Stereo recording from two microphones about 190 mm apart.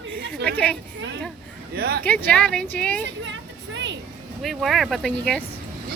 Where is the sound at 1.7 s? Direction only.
55° right (ahead or behind).